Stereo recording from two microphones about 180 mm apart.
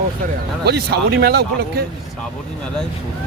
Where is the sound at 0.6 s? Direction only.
65° right (ahead or behind).